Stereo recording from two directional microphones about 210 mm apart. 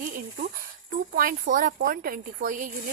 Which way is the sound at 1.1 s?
40° right (ahead or behind).